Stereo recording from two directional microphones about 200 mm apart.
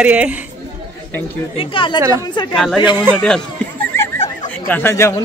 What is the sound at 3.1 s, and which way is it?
Speech, 5° left (ahead or behind).